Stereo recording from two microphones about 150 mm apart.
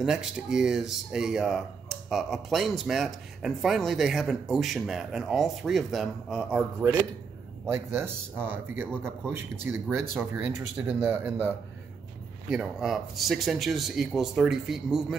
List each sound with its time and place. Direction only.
0.0 s speech: 5° right (ahead or behind)
6.8 s speech: 20° right (ahead or behind)
12.4 s speech: 5° right (ahead or behind)